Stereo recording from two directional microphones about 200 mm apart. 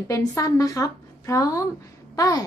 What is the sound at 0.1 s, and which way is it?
A woman's voice, 15° left (ahead or behind).